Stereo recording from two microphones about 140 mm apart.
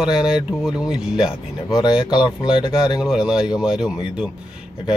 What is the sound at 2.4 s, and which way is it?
Speech, 5° right (ahead or behind).